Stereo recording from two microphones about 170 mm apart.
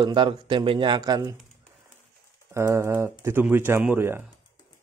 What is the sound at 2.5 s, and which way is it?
Speech, 15° right (ahead or behind).